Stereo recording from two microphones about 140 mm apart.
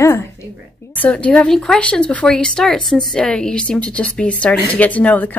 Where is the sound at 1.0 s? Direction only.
10° left (ahead or behind).